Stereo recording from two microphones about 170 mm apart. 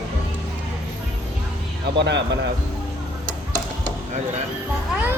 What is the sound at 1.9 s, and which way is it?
Speech, 90° right.